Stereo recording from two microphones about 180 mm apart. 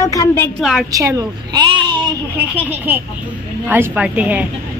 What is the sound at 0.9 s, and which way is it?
Speech, 20° right (ahead or behind).